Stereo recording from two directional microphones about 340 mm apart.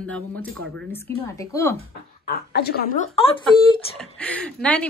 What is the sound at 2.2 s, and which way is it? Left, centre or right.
Speech, left.